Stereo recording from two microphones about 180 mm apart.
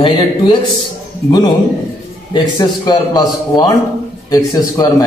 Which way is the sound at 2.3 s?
20° left (ahead or behind).